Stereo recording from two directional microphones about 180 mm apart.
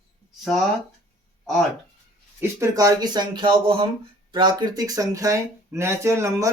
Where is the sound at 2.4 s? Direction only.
15° right (ahead or behind).